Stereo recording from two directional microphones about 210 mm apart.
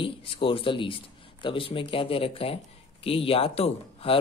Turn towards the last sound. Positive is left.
turn(degrees=30)  # may be behind; listen again after turning